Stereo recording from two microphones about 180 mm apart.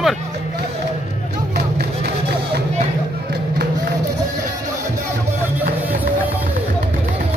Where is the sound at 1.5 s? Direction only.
65° right (ahead or behind).